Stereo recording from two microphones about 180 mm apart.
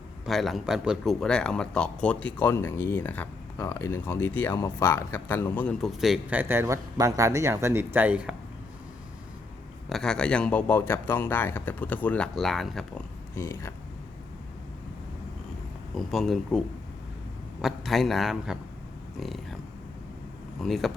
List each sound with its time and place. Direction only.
0.3 s speech: centre (ahead or behind)
9.9 s speech: 5° left (ahead or behind)
13.3 s speech: 15° left (ahead or behind)
16.0 s a man's voice: centre (ahead or behind)
20.6 s a man's voice: centre (ahead or behind)